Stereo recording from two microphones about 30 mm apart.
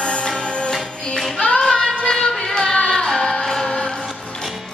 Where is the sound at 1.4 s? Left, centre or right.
Left.